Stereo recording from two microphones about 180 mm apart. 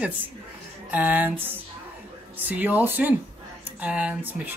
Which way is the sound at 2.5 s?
10° right (ahead or behind).